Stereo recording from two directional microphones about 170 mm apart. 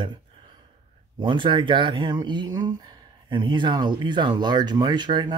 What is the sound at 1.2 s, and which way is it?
Speech, 30° right (ahead or behind).